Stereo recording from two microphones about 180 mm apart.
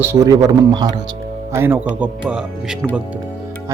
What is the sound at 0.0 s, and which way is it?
Speech, 15° right (ahead or behind).